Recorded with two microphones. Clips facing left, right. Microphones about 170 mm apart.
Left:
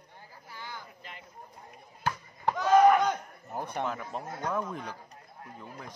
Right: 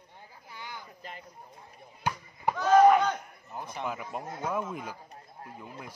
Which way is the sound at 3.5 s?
55° left (ahead or behind).